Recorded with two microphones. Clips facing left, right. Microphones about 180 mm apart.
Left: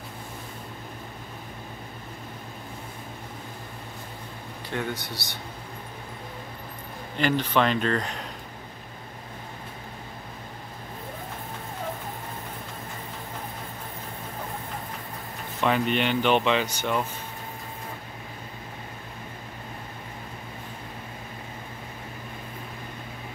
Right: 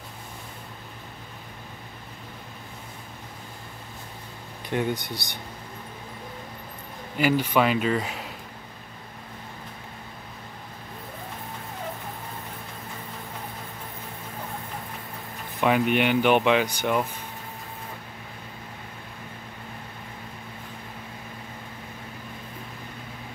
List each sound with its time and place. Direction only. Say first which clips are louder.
4.6 s speech: right 4 dB; 15° right (ahead or behind)
7.2 s speech: right 2 dB; 10° right (ahead or behind)
15.6 s speech: right 2 dB; 10° right (ahead or behind)